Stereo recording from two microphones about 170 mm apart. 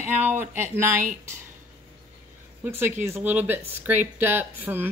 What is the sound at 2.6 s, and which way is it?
Speech, 15° right (ahead or behind).